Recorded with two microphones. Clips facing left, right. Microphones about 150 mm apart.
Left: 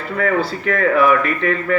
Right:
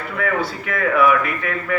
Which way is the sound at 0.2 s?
35° left (ahead or behind).